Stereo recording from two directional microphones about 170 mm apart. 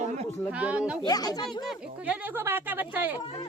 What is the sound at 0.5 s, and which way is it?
Speech, 5° right (ahead or behind).